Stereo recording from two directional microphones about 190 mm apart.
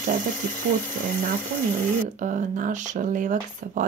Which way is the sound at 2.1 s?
40° right (ahead or behind).